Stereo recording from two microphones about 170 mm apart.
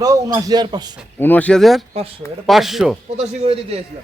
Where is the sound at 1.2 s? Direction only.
10° left (ahead or behind).